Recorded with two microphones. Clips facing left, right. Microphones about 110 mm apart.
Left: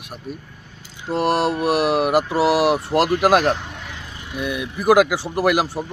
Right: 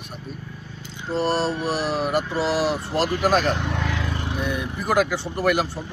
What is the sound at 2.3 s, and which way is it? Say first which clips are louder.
Speech: left 5 dB; 15° left (ahead or behind).